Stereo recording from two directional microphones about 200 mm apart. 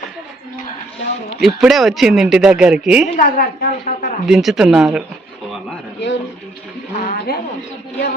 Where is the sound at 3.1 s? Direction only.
40° left (ahead or behind).